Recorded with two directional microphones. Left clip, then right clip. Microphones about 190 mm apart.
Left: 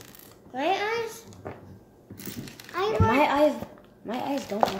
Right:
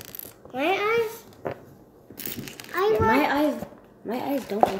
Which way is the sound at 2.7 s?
15° right (ahead or behind).